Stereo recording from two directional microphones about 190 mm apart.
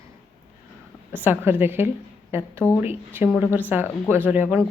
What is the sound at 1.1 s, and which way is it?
A woman's voice, 10° right (ahead or behind).